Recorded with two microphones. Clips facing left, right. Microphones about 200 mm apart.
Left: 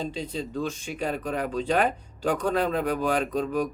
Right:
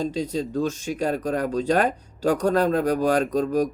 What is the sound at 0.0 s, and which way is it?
Speech, 40° right (ahead or behind).